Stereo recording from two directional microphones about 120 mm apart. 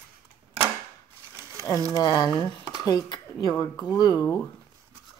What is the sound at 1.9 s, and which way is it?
Speech, 30° left (ahead or behind).